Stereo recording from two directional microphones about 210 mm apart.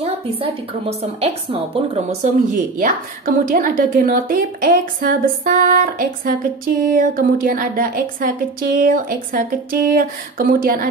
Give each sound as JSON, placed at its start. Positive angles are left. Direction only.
{"t": 0.0, "sound": "a woman's voice", "side_deg": -30}
{"t": 2.8, "sound": "speech", "side_deg": -45}